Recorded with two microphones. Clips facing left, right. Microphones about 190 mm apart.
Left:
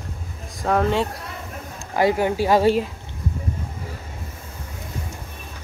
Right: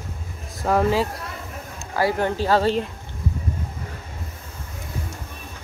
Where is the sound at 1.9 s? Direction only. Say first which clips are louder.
Left 3 dB; 15° left (ahead or behind).